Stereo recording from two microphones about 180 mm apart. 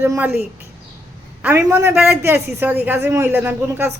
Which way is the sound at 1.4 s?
15° right (ahead or behind).